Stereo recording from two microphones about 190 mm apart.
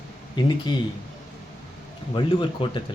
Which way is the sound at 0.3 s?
25° left (ahead or behind).